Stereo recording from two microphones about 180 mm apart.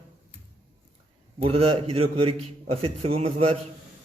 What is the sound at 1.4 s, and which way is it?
A man's voice, 35° right (ahead or behind).